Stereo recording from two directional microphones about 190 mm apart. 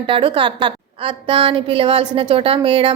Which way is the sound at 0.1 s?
25° right (ahead or behind).